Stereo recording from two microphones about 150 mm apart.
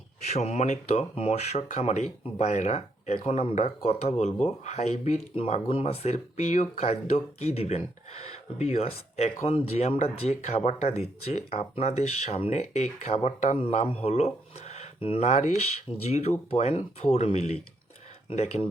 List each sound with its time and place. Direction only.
0.2 s speech: 50° left (ahead or behind)